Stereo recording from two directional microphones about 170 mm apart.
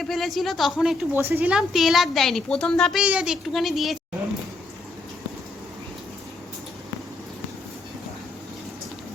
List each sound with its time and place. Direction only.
0.0 s a woman's voice: centre (ahead or behind)